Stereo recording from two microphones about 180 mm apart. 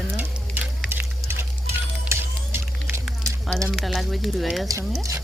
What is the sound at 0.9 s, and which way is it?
Music, 15° right (ahead or behind).